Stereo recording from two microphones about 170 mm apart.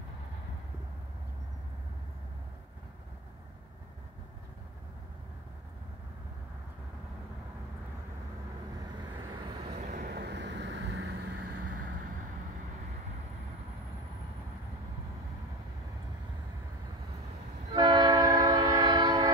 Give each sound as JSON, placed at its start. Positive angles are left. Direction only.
{"t": 9.1, "sound": "vehicle", "side_deg": -25}
{"t": 9.8, "sound": "vehicle", "side_deg": -45}
{"t": 10.0, "sound": "vehicle", "side_deg": -75}
{"t": 17.7, "sound": "train", "side_deg": -25}